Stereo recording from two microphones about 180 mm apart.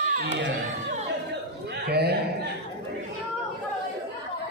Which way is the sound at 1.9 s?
60° right (ahead or behind).